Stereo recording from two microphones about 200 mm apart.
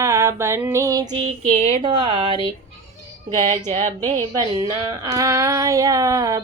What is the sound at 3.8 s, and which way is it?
Speech, 40° right (ahead or behind).